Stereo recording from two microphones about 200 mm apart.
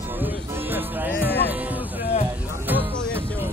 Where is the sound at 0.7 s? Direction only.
10° right (ahead or behind).